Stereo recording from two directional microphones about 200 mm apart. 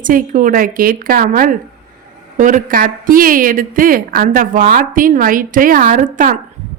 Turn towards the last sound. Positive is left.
turn(degrees=-40)  # may be behind; listen again after turning